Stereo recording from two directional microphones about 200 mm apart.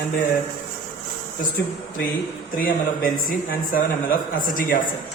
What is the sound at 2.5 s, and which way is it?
A man's voice, 45° left (ahead or behind).